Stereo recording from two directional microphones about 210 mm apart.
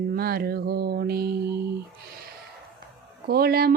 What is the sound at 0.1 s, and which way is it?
Mantra, 45° right (ahead or behind).